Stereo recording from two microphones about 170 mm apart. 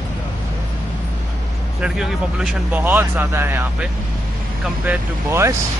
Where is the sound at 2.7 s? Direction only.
10° right (ahead or behind).